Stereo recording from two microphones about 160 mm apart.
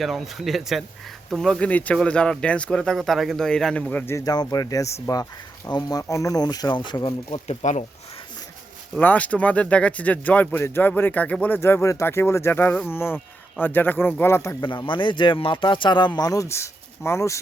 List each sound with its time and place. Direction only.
0.0 s speech: centre (ahead or behind); by 7.9 s 45° left (ahead or behind)
9.0 s speech: 10° left (ahead or behind)
14.6 s speech: 30° left (ahead or behind)